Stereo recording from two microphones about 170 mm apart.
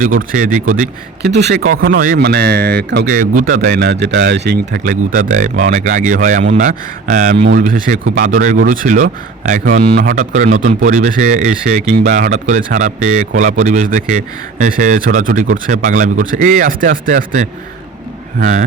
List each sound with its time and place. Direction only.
0.0 s speech: 50° right (ahead or behind)
1.3 s speech: 80° right; by 18.6 s 50° right (ahead or behind)